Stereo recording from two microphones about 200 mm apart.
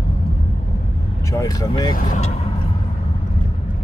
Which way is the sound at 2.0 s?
40° left (ahead or behind).